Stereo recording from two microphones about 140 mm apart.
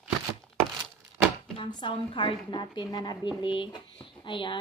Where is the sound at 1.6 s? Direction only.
35° left (ahead or behind).